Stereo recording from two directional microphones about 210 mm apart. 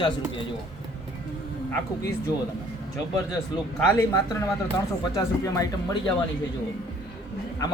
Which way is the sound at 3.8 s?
15° left (ahead or behind).